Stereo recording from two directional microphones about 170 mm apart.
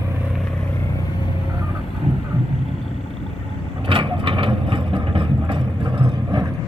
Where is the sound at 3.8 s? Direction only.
30° right (ahead or behind).